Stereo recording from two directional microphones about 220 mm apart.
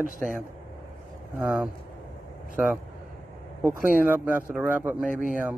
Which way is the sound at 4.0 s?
10° right (ahead or behind).